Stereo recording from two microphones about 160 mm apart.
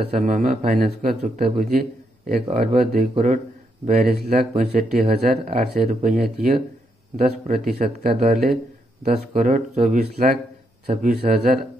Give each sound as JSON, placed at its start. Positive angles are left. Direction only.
{"t": 0.1, "sound": "speech", "side_deg": -55}
{"t": 0.8, "sound": "speech", "side_deg": -50}
{"t": 7.2, "sound": "speech", "side_deg": -55}
{"t": 11.1, "sound": "speech", "side_deg": -70}